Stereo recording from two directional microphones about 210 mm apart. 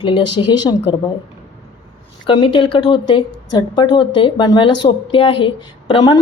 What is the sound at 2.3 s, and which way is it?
A woman's voice, 25° left (ahead or behind).